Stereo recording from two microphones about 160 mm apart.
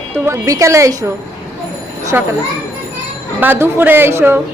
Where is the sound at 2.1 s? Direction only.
15° right (ahead or behind).